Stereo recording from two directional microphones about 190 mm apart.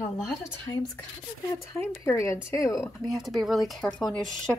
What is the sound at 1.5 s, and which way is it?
A woman's voice, 15° left (ahead or behind).